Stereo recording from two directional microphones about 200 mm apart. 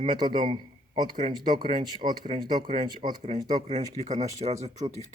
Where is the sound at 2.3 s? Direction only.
25° right (ahead or behind).